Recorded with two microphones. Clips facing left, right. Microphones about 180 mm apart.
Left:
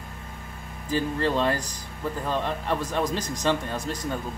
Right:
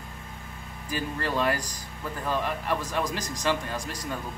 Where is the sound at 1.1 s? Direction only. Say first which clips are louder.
Left 1 dB; 20° left (ahead or behind).